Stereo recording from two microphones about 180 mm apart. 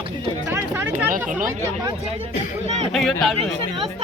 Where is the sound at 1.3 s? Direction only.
45° right (ahead or behind).